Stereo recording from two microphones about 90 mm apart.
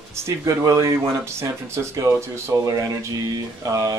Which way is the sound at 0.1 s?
30° right (ahead or behind).